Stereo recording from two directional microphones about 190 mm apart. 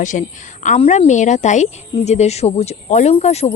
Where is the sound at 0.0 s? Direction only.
40° left (ahead or behind).